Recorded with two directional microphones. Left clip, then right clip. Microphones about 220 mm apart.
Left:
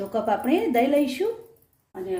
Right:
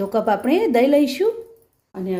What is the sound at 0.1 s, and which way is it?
A woman's voice, 40° right (ahead or behind).